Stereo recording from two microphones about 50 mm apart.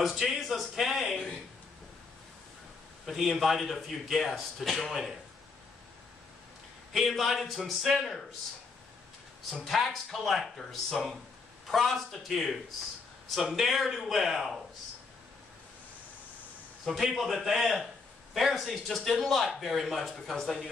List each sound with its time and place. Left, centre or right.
0.0 s a sound: centre
1.1 s a sound: centre
3.1 s a man's voice: centre
6.9 s a man's voice: centre
9.7 s a man's voice: centre
16.8 s a man's voice: centre